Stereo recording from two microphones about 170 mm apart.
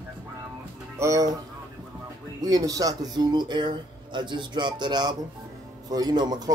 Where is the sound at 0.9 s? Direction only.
20° right (ahead or behind).